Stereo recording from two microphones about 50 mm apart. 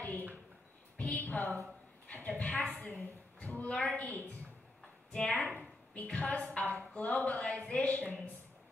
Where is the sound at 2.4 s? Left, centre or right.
Centre.